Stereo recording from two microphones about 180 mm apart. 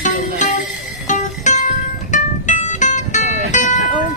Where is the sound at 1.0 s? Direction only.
40° left (ahead or behind).